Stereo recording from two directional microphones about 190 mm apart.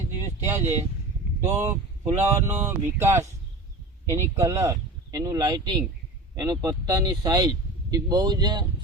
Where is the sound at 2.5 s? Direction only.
10° right (ahead or behind).